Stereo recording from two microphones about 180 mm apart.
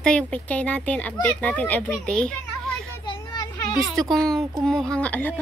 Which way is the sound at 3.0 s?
25° left (ahead or behind).